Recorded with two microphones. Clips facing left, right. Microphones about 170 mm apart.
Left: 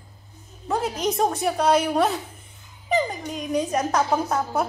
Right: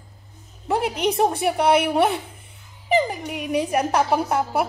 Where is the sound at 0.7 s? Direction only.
65° right (ahead or behind).